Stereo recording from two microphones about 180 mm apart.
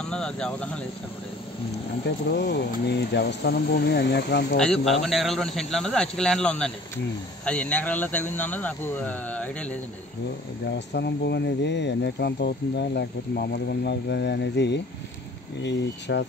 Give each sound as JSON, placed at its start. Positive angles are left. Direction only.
{"t": 0.0, "sound": "speech", "side_deg": 5}
{"t": 2.0, "sound": "speech", "side_deg": 70}
{"t": 4.6, "sound": "speech", "side_deg": 5}
{"t": 10.7, "sound": "speech", "side_deg": 70}